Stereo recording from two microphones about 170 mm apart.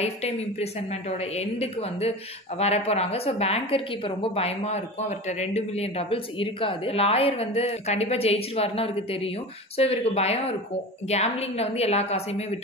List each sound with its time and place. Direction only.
0.0 s a woman's voice: 40° left (ahead or behind)